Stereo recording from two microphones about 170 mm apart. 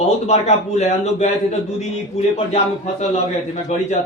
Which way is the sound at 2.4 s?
40° left (ahead or behind).